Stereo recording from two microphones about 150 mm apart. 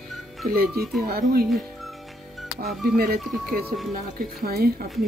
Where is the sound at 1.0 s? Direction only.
90° right.